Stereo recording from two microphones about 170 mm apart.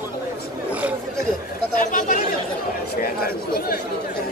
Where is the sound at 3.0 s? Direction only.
60° left (ahead or behind).